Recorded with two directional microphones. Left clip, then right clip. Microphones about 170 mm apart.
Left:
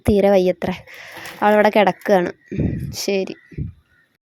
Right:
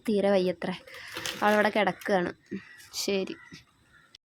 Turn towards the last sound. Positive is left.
turn(degrees=30)  # may be behind; listen again after turning